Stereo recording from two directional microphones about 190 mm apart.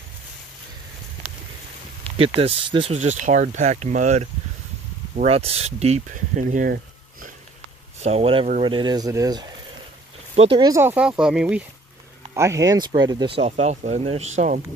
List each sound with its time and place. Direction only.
2.1 s speech: 30° right (ahead or behind); by 7.3 s 50° right (ahead or behind)
8.0 s speech: 35° right (ahead or behind)
10.3 s speech: 30° right (ahead or behind)
10.6 s speech: 15° right (ahead or behind)
12.4 s speech: 15° right (ahead or behind)
13.4 s speech: 35° right (ahead or behind)